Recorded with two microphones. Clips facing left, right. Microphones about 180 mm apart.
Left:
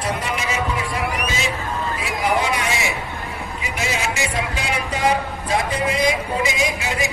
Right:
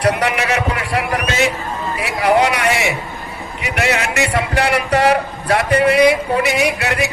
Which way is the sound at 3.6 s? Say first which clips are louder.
Right 7 dB; 70° right (ahead or behind).